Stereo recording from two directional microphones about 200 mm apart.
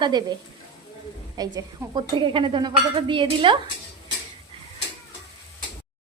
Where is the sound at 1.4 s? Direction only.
20° right (ahead or behind).